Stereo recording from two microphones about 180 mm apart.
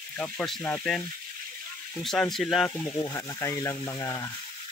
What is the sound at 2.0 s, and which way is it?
Speech, centre (ahead or behind).